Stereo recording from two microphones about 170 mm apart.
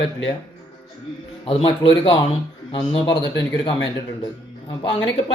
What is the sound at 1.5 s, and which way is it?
Speech, 30° left (ahead or behind).